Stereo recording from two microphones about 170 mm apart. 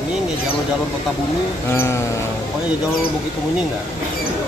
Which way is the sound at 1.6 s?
15° left (ahead or behind).